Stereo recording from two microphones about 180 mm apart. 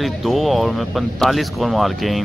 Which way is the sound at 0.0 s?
Centre (ahead or behind).